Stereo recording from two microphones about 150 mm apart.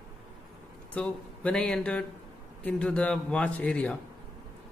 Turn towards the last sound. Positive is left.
turn(degrees=10)  # may be behind; listen again after turning